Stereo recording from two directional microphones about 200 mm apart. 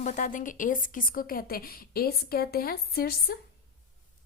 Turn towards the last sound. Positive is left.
turn(degrees=50)  # may be behind; listen again after turning